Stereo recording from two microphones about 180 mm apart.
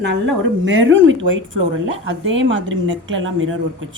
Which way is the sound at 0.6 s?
90° right.